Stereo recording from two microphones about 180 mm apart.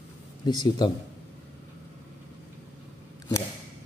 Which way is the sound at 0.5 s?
25° left (ahead or behind).